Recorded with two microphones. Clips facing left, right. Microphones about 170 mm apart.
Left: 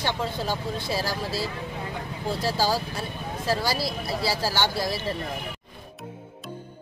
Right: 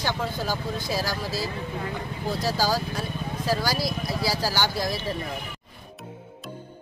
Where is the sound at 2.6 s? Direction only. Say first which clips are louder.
Even; 5° left (ahead or behind).